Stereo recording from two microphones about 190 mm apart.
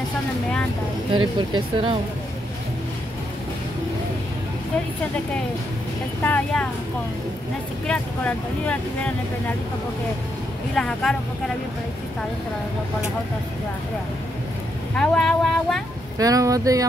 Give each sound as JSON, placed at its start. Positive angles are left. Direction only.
{"t": 1.1, "sound": "speech", "side_deg": -25}
{"t": 6.2, "sound": "speech", "side_deg": 10}
{"t": 7.8, "sound": "speech", "side_deg": 5}
{"t": 10.8, "sound": "speech", "side_deg": 5}
{"t": 15.0, "sound": "speech", "side_deg": 5}
{"t": 16.2, "sound": "speech", "side_deg": -20}